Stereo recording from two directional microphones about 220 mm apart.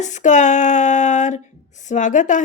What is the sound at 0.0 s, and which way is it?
A woman's voice, 35° left (ahead or behind).